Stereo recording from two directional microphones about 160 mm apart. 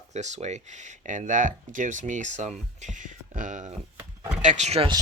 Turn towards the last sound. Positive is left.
turn(degrees=-40)  # may be behind; listen again after turning